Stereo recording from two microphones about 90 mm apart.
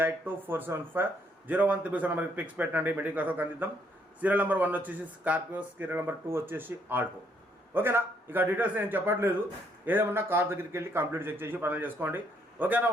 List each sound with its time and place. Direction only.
0.0 s a man's voice: 25° right (ahead or behind)